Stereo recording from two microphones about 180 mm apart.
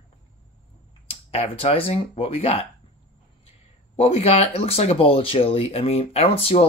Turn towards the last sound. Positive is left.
turn(degrees=35)  # may be behind; listen again after turning